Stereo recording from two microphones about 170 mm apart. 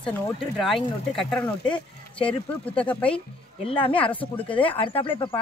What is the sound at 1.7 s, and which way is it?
Speech, 30° left (ahead or behind).